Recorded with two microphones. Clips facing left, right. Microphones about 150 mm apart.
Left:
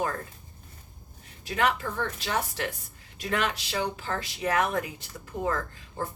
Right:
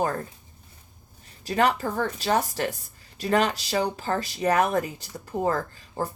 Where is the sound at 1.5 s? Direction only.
35° right (ahead or behind).